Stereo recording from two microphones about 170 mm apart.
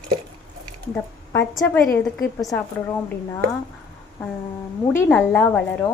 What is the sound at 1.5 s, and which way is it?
Speech, centre (ahead or behind).